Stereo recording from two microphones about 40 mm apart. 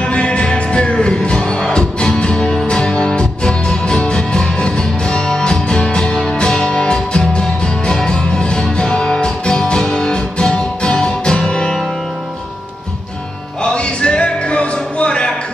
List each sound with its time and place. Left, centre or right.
0.0 s music: left
13.6 s music: left